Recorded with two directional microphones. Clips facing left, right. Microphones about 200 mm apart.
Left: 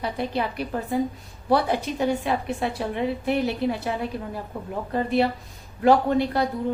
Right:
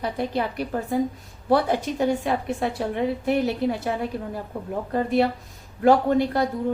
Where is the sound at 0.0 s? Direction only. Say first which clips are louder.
Right 1 dB; 45° right (ahead or behind).